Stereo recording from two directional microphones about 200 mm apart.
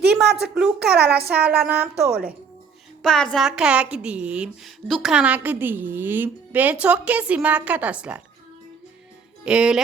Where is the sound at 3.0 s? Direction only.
5° left (ahead or behind).